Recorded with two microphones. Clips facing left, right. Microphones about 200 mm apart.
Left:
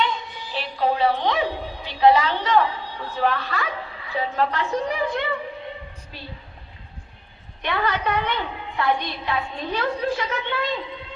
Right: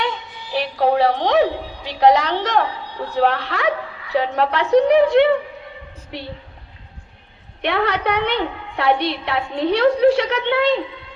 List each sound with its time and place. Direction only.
0.5 s music: 65° right (ahead or behind)
1.9 s a woman's voice: 70° right (ahead or behind)
7.6 s a woman's voice: 70° right (ahead or behind)